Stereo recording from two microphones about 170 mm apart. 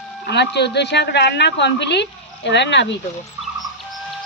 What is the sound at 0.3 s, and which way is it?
A woman's voice, 85° left.